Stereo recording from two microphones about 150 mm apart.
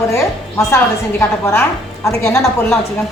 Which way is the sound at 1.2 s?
15° left (ahead or behind).